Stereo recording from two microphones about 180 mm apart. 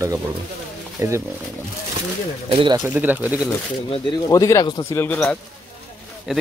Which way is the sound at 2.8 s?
10° right (ahead or behind).